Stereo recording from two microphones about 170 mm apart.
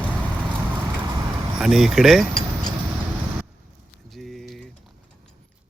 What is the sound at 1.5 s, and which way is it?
Speech, centre (ahead or behind).